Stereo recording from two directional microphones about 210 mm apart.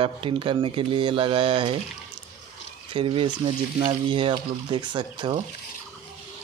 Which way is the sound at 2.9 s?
25° right (ahead or behind).